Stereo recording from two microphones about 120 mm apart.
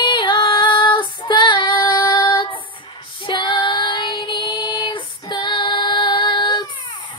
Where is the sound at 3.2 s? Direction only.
45° left (ahead or behind).